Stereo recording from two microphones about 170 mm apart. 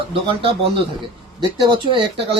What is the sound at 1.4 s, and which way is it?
Speech, 30° right (ahead or behind).